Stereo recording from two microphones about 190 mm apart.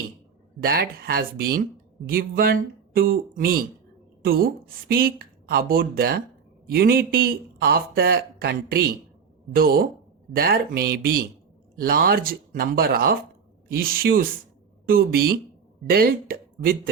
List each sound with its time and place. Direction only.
0.6 s speech: 55° right (ahead or behind)